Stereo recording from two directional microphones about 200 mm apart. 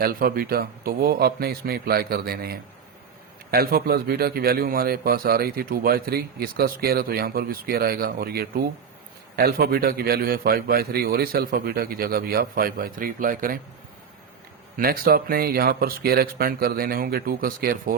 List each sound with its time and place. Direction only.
0.0 s a man's voice: 50° right (ahead or behind)
14.8 s a man's voice: 50° right (ahead or behind)